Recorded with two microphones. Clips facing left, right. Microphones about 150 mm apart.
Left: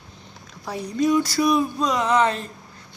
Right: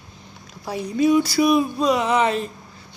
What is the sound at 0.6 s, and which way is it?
A woman's voice, 10° right (ahead or behind).